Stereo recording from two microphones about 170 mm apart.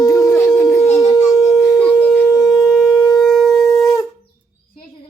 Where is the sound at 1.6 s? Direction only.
20° left (ahead or behind).